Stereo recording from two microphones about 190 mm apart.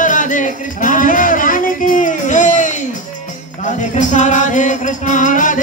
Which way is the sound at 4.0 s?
40° left (ahead or behind).